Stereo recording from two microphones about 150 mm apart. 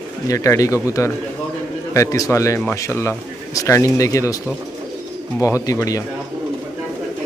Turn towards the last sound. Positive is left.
turn(degrees=20)  # may be behind; listen again after turning